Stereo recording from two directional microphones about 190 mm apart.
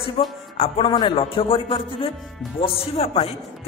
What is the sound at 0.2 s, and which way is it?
A man's voice, 30° left (ahead or behind).